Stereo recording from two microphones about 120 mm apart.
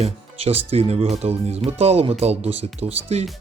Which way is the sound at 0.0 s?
55° right (ahead or behind).